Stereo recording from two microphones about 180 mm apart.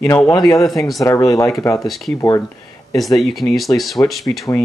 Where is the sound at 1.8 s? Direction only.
Centre (ahead or behind).